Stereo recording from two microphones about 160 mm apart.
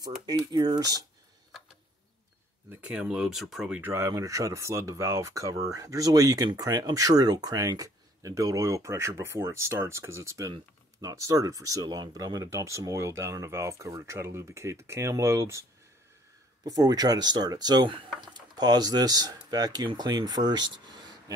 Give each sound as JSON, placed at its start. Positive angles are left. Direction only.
{"t": 0.3, "sound": "speech", "side_deg": -25}
{"t": 2.7, "sound": "speech", "side_deg": -10}
{"t": 16.6, "sound": "speech", "side_deg": -25}